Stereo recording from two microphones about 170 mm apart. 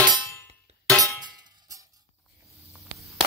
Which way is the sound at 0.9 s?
Centre (ahead or behind).